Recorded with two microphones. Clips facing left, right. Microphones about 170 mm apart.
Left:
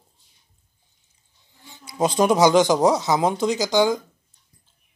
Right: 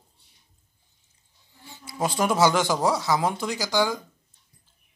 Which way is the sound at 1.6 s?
20° left (ahead or behind).